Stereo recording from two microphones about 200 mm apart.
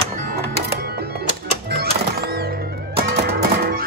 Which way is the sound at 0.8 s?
50° right (ahead or behind).